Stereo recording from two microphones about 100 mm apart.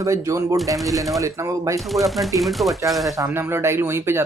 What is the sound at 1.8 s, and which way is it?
Speech, centre (ahead or behind).